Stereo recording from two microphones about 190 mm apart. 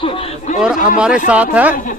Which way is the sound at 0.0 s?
30° left (ahead or behind).